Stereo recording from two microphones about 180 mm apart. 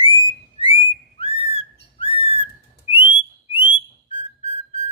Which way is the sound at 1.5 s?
30° left (ahead or behind).